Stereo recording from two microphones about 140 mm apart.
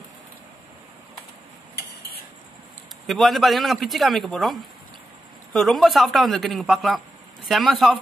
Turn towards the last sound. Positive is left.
turn(degrees=0)  # may be behind; listen again after turning